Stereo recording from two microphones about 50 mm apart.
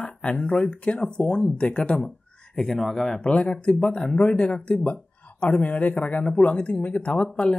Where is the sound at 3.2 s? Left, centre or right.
Left.